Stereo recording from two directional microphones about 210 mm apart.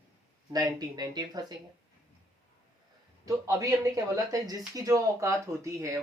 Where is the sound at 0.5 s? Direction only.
20° right (ahead or behind).